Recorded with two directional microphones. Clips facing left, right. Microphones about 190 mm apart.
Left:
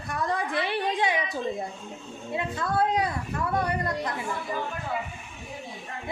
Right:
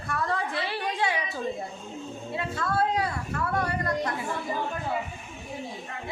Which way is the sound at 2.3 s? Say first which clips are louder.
Left 2 dB; 20° left (ahead or behind).